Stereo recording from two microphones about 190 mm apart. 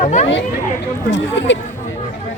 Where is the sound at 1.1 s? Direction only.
70° left (ahead or behind).